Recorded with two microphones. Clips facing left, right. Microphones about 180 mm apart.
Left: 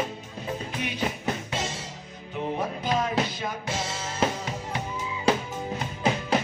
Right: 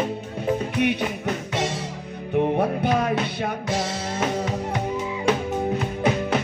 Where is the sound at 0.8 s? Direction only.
65° right (ahead or behind).